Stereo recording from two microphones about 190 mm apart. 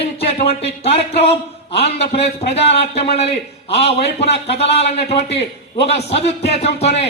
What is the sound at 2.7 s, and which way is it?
A man's voice, 30° left (ahead or behind).